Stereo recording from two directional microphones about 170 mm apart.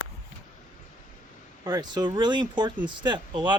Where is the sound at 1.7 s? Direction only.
25° right (ahead or behind).